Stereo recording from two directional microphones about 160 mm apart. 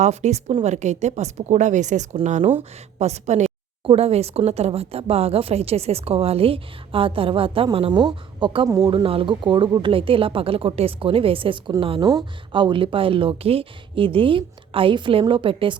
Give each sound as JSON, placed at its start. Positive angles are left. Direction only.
{"t": 0.0, "sound": "a woman's voice", "side_deg": -45}